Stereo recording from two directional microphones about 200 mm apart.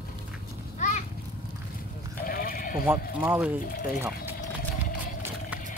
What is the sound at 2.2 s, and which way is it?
Sheep, 45° left (ahead or behind).